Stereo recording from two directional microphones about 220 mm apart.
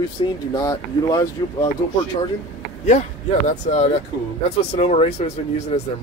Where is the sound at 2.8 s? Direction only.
35° left (ahead or behind).